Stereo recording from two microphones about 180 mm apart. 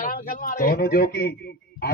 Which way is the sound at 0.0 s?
50° left (ahead or behind).